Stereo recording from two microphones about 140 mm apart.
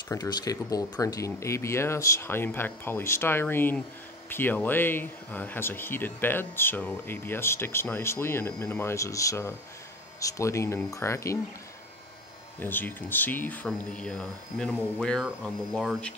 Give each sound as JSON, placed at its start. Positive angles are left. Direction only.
{"t": 0.1, "sound": "speech", "side_deg": 25}
{"t": 12.5, "sound": "speech", "side_deg": 15}